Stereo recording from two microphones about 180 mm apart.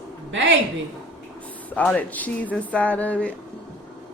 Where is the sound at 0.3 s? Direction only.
90° right.